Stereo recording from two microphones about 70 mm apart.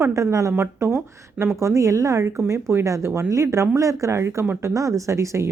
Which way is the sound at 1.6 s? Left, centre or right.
Right.